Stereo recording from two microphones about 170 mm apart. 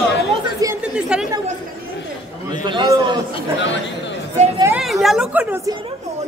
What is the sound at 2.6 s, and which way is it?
Speech, 25° right (ahead or behind).